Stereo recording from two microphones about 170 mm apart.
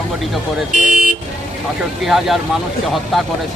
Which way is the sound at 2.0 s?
Centre (ahead or behind).